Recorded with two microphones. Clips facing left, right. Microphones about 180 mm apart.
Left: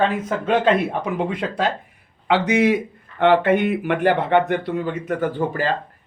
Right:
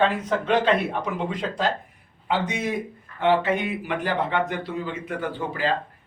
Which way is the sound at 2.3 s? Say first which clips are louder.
Left 8 dB; 85° left.